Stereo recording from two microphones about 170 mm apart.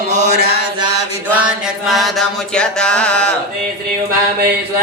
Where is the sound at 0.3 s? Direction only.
65° right (ahead or behind).